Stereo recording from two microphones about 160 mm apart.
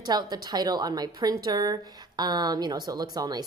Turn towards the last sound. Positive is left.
turn(degrees=-25)  # may be behind; listen again after turning